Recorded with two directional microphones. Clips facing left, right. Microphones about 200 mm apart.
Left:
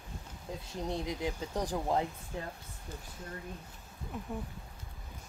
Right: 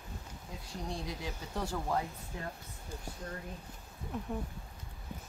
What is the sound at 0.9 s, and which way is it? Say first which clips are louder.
Speech: left 6 dB; 20° left (ahead or behind).